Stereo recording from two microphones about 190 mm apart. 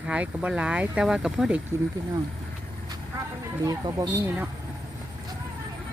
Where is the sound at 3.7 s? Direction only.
20° right (ahead or behind).